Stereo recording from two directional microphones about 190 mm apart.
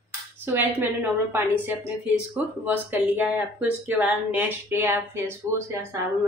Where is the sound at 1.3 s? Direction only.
10° right (ahead or behind).